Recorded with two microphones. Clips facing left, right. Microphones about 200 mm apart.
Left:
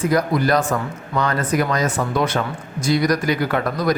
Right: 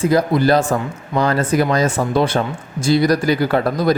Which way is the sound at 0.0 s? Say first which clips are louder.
Right 4 dB; 30° right (ahead or behind).